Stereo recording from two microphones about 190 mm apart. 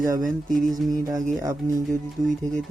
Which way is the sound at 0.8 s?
20° right (ahead or behind).